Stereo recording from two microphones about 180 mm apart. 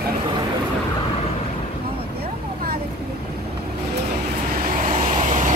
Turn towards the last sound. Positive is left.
turn(degrees=-40)  # may be behind; listen again after turning